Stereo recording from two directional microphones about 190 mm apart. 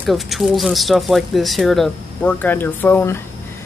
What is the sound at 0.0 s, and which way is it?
Speech, centre (ahead or behind).